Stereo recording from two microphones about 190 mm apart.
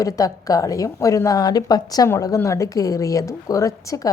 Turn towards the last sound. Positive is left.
turn(degrees=15)  # may be behind; listen again after turning